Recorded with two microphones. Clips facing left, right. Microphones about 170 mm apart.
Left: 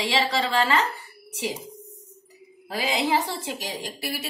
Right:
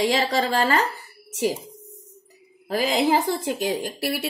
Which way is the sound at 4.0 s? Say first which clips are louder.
Right 6 dB; 65° right (ahead or behind).